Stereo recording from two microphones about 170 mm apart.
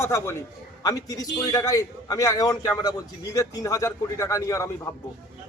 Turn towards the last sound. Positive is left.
turn(degrees=20)  # may be behind; listen again after turning